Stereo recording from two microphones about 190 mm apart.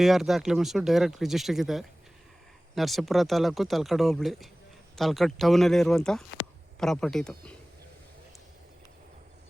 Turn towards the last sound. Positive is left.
turn(degrees=5)  # may be behind; listen again after turning